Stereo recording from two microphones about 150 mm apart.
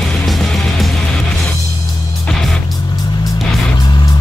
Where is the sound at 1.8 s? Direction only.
30° left (ahead or behind).